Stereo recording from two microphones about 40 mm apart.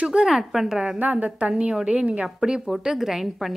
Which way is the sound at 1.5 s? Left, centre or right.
Right.